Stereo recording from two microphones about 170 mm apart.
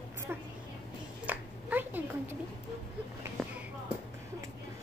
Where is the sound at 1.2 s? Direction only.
10° right (ahead or behind).